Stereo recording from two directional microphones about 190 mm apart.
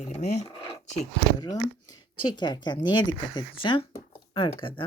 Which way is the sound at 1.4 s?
20° left (ahead or behind).